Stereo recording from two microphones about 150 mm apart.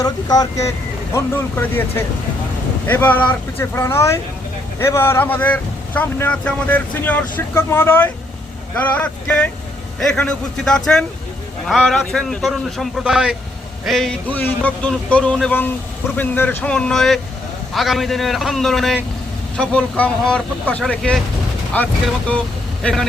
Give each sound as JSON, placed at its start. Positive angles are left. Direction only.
{"t": 0.0, "sound": "speech", "side_deg": 25}